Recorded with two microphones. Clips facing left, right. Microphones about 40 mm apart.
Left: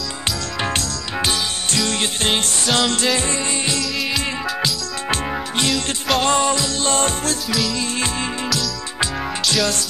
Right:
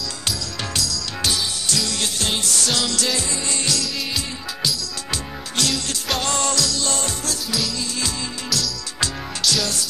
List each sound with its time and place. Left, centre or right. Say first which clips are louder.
0.6 s music: left 4 dB; left
5.7 s music: left 4 dB; centre
6.2 s music: left 4 dB; left